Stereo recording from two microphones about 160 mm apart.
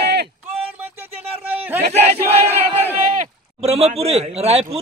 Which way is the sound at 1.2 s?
10° right (ahead or behind).